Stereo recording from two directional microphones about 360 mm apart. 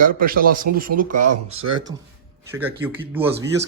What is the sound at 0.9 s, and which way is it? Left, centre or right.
Speech, right.